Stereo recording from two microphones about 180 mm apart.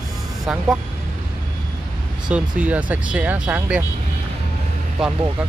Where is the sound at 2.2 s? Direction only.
5° right (ahead or behind).